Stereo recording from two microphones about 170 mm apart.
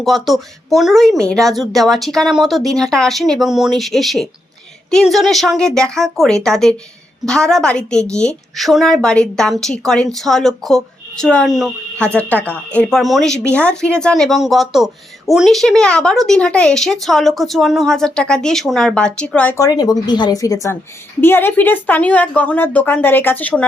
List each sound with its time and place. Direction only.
0.0 s a woman's voice: centre (ahead or behind)
19.5 s a woman's voice: 20° left (ahead or behind)